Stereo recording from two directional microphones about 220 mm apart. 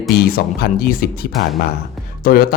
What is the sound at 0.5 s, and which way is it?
Speech, 45° left (ahead or behind).